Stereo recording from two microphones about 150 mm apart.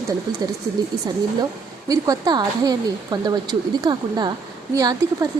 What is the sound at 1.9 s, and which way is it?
A woman's voice, 25° right (ahead or behind).